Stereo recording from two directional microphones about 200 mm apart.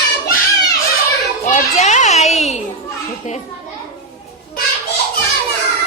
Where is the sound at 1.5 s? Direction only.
35° left (ahead or behind).